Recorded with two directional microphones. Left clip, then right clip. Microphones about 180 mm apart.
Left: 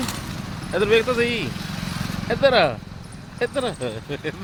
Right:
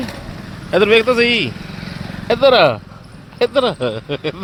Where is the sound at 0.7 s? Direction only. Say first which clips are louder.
Right 7 dB; 55° right (ahead or behind).